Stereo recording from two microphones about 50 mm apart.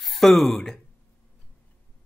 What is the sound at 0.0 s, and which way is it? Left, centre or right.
Speech, centre.